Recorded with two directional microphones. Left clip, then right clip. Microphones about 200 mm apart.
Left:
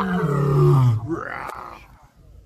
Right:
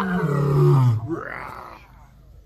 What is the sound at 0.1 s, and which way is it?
Roar, centre (ahead or behind).